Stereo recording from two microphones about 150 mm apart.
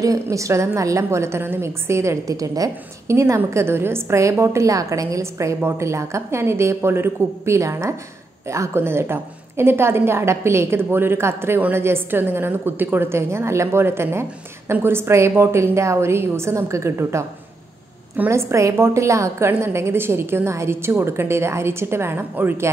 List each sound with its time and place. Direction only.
0.0 s a woman's voice: 20° right (ahead or behind)